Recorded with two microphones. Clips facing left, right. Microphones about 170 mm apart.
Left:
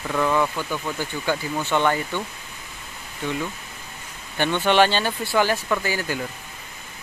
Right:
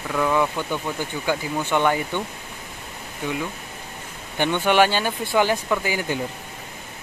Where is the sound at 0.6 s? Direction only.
20° right (ahead or behind).